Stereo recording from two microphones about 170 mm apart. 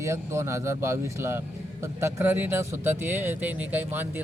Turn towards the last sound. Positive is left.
turn(degrees=-10)  # may be behind; listen again after turning